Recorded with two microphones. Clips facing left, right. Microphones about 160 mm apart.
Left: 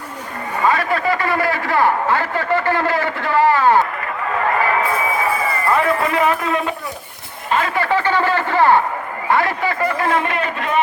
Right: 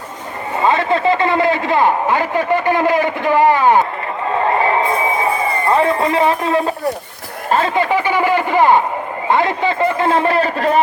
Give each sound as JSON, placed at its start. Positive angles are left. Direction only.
{"t": 0.6, "sound": "a man's voice", "side_deg": -25}
{"t": 4.3, "sound": "a sound", "side_deg": -25}
{"t": 7.8, "sound": "a man's voice", "side_deg": -15}